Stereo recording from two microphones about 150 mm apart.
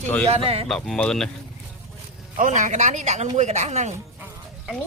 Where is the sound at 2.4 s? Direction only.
55° right (ahead or behind).